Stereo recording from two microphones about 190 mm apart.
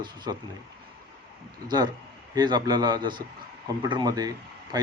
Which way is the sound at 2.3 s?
20° right (ahead or behind).